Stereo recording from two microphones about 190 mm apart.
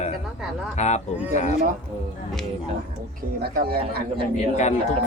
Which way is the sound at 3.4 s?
55° right (ahead or behind).